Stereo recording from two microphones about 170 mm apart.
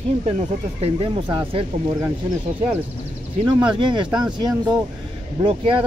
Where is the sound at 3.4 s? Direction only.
25° right (ahead or behind).